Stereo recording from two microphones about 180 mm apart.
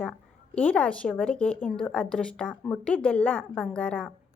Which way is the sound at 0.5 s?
10° left (ahead or behind).